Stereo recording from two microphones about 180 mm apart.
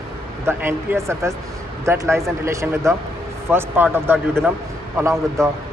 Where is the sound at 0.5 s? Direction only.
15° right (ahead or behind).